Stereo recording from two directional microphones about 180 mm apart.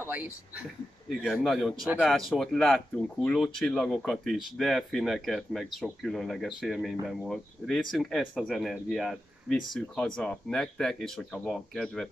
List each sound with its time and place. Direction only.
0.0 s speech: 10° right (ahead or behind)